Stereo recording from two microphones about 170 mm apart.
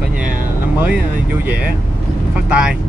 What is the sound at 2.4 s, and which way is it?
Speech, 5° right (ahead or behind).